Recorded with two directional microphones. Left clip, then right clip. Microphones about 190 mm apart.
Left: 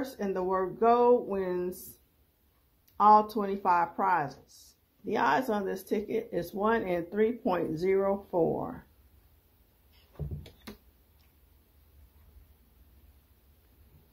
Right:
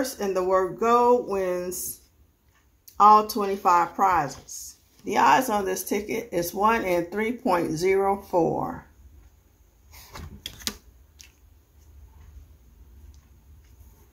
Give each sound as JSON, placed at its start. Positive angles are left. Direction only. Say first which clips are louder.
{"t": 0.0, "sound": "speech", "louder": "right 7 dB", "side_deg": 25}
{"t": 2.8, "sound": "speech", "louder": "right 5 dB", "side_deg": 25}